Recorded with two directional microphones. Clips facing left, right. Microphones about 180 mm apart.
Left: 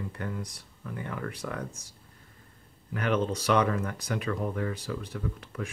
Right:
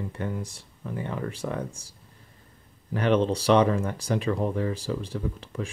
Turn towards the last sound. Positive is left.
turn(degrees=-30)  # may be behind; listen again after turning